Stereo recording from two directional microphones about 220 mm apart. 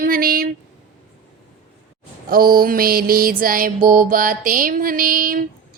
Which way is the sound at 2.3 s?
40° right (ahead or behind).